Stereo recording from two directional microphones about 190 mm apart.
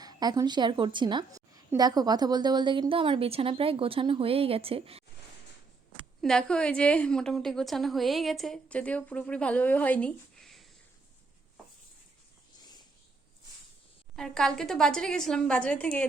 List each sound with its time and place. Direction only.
0.0 s a woman's voice: 20° right (ahead or behind)
6.2 s a woman's voice: 5° left (ahead or behind)
14.2 s a woman's voice: 5° left (ahead or behind)